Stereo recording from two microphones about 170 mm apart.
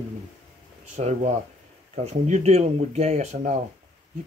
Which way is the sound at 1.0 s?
45° right (ahead or behind).